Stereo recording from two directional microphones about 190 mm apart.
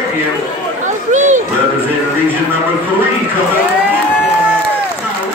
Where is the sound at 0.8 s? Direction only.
40° right (ahead or behind).